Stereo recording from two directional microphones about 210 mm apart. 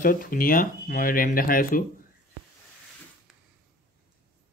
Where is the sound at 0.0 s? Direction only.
45° left (ahead or behind).